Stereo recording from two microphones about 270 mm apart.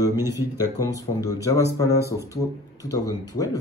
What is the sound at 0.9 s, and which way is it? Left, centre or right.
A man's voice, centre.